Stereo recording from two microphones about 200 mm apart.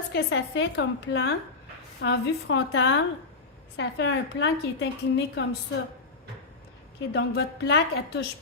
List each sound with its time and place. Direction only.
0.1 s a woman's voice: 70° left (ahead or behind)
7.1 s a woman's voice: 60° left (ahead or behind)